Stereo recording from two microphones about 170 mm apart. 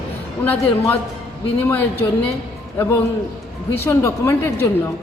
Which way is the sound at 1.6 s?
10° left (ahead or behind).